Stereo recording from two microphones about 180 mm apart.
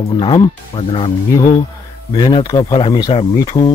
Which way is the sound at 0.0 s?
25° left (ahead or behind).